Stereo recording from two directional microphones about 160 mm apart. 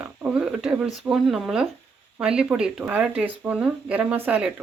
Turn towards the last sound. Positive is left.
turn(degrees=-10)  # may be behind; listen again after turning